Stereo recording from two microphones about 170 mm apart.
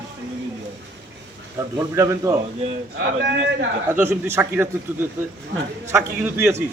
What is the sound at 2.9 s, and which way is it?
Speech, 85° right.